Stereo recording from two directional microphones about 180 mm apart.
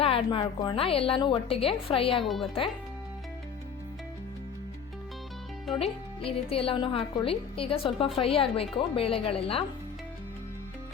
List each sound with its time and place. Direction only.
0.0 s a woman's voice: 30° left (ahead or behind)
2.2 s speech: centre (ahead or behind)
5.8 s a woman's voice: 30° left (ahead or behind)